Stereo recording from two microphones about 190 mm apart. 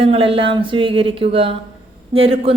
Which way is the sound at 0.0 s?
30° right (ahead or behind).